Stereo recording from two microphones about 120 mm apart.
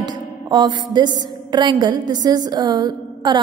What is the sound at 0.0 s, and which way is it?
Music, 40° right (ahead or behind).